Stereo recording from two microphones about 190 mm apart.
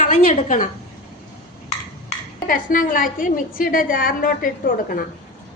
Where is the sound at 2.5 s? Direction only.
45° left (ahead or behind).